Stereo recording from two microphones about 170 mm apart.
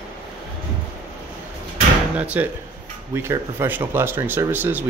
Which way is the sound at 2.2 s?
10° right (ahead or behind).